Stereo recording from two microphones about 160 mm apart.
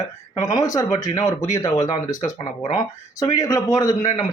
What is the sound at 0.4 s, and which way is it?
Speech, 20° left (ahead or behind).